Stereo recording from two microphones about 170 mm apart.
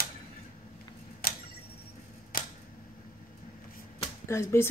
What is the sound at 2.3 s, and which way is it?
Camera, 60° left (ahead or behind).